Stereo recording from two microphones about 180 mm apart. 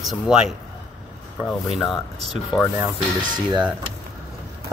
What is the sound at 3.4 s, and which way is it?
Speech, 25° right (ahead or behind).